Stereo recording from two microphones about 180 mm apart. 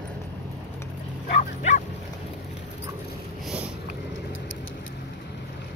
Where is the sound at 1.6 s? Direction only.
40° left (ahead or behind).